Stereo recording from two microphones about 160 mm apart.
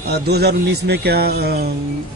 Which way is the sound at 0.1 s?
90° right.